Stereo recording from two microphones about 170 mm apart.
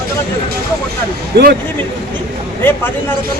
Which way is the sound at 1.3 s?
70° right (ahead or behind).